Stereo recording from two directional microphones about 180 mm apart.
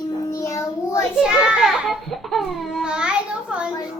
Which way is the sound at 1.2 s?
5° right (ahead or behind).